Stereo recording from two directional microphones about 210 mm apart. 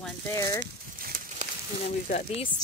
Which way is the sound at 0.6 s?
45° right (ahead or behind).